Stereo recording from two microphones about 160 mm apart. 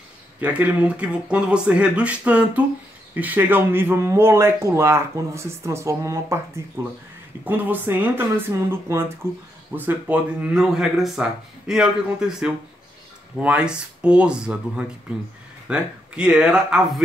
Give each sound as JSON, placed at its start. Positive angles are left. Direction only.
{"t": 0.4, "sound": "speech", "side_deg": -10}